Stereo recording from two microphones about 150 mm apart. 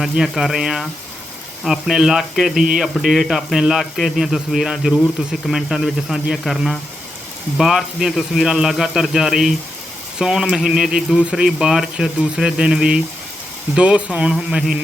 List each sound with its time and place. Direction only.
0.0 s speech: centre (ahead or behind)